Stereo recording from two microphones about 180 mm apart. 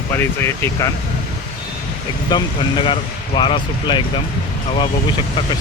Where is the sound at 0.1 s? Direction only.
15° left (ahead or behind).